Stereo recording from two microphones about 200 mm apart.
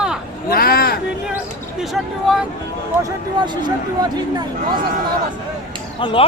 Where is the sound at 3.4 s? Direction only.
20° right (ahead or behind).